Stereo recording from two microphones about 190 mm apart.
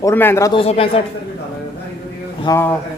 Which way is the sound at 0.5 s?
30° left (ahead or behind).